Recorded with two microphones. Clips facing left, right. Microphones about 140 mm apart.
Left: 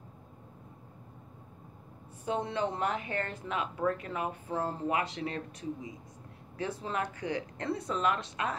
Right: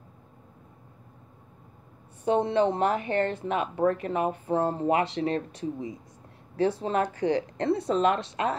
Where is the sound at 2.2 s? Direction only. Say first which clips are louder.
Right 9 dB; 25° right (ahead or behind).